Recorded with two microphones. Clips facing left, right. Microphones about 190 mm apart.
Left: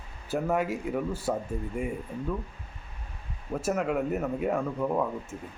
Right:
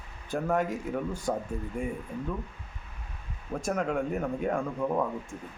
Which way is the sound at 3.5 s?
5° left (ahead or behind).